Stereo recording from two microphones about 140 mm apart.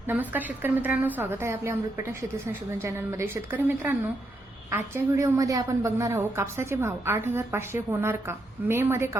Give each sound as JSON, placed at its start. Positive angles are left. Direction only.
{"t": 0.1, "sound": "a woman's voice", "side_deg": -10}
{"t": 2.8, "sound": "a woman's voice", "side_deg": -20}